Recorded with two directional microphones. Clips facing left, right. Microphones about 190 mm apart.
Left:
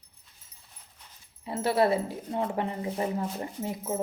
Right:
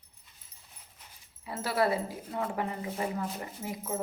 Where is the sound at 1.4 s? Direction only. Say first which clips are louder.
Left 4 dB; 25° left (ahead or behind).